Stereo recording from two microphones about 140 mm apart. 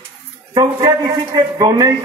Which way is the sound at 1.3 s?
25° right (ahead or behind).